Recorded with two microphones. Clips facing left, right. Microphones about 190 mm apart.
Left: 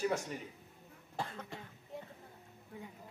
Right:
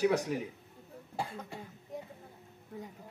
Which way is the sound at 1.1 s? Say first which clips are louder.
Right 3 dB; 10° right (ahead or behind).